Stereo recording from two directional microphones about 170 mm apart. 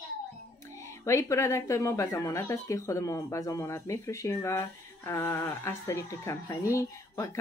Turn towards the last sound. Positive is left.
turn(degrees=15)  # may be behind; listen again after turning